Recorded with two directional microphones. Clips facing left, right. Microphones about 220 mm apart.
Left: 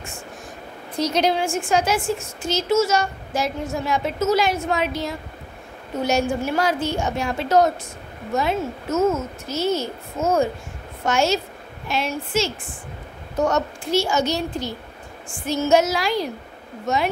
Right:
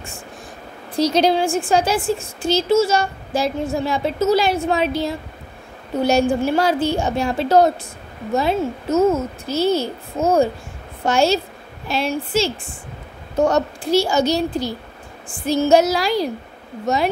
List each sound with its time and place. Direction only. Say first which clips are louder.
0.9 s a woman's voice: right 4 dB; 30° right (ahead or behind)